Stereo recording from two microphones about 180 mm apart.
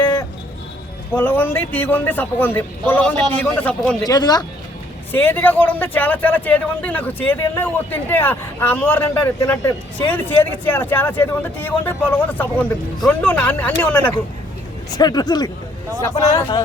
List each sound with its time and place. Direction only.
1.1 s a man's voice: 10° left (ahead or behind)
4.0 s speech: 20° left (ahead or behind)
5.1 s a man's voice: 10° left (ahead or behind)
14.9 s a man's voice: 20° left (ahead or behind)